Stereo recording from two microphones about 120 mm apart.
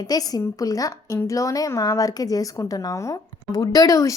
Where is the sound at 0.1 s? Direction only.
30° left (ahead or behind).